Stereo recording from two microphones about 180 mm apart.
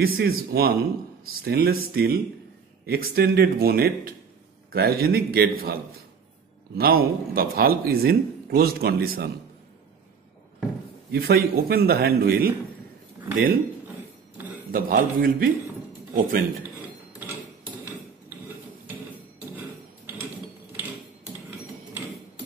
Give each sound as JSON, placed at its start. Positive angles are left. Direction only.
{"t": 0.0, "sound": "speech", "side_deg": -55}
{"t": 6.8, "sound": "speech", "side_deg": -55}
{"t": 11.1, "sound": "speech", "side_deg": -60}
{"t": 14.7, "sound": "a man's voice", "side_deg": -50}